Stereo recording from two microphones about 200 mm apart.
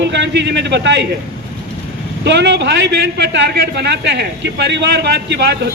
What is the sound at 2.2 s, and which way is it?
A man's voice, 60° right (ahead or behind).